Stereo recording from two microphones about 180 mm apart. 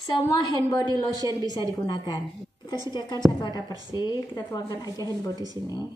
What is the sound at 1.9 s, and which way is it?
A woman's voice, 20° left (ahead or behind).